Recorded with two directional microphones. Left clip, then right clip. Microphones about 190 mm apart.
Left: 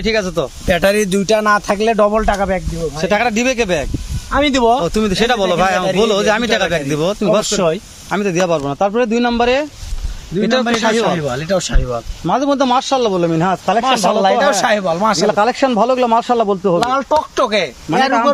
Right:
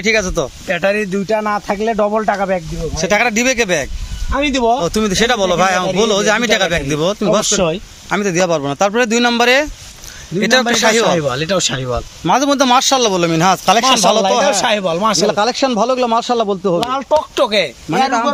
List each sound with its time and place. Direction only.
0.0 s a man's voice: 5° right (ahead or behind)
0.7 s speech: 55° left (ahead or behind)
1.3 s speech: 30° left (ahead or behind); by 2.5 s 15° left (ahead or behind)
2.5 s a man's voice: centre (ahead or behind)
7.4 s speech: 50° right (ahead or behind)
8.1 s a man's voice: 5° right (ahead or behind)
11.0 s speech: 45° right (ahead or behind)
12.2 s a man's voice: 10° right (ahead or behind)
13.8 s speech: 45° right (ahead or behind)
14.1 s a man's voice: 25° right (ahead or behind)
15.3 s a man's voice: 5° right (ahead or behind)
17.3 s a man's voice: 25° right (ahead or behind)